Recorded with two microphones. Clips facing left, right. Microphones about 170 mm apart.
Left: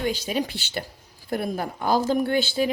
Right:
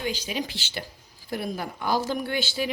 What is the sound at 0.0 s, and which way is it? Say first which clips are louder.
A woman's voice: left 4 dB; 50° left (ahead or behind).